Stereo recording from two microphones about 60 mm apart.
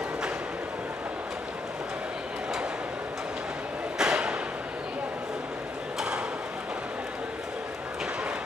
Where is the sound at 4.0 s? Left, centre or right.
Centre.